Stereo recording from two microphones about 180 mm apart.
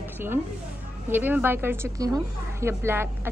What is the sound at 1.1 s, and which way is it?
Speech, 10° right (ahead or behind).